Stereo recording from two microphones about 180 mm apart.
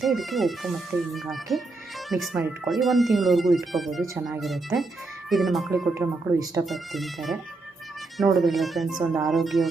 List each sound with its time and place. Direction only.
0.0 s speech: centre (ahead or behind)
4.0 s speech: 15° right (ahead or behind)
4.4 s speech: centre (ahead or behind)
5.9 s speech: 15° right (ahead or behind)
6.7 s speech: centre (ahead or behind)